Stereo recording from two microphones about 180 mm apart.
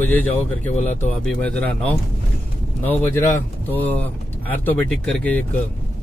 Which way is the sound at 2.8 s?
10° left (ahead or behind).